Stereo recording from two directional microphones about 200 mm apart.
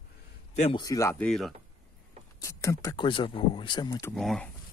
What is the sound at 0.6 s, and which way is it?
Speech, 25° left (ahead or behind).